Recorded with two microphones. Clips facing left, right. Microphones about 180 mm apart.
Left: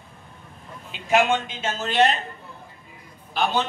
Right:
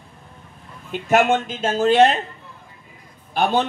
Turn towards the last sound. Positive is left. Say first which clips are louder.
# right 4 dB
turn(degrees=-55)  # may be behind; listen again after turning